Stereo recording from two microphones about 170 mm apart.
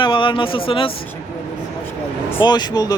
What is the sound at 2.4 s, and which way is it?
Speech, 25° left (ahead or behind).